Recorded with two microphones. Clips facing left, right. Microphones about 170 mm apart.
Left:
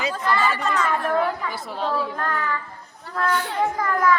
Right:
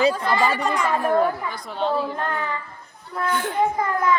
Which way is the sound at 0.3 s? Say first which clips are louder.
Right 1 dB; 15° right (ahead or behind).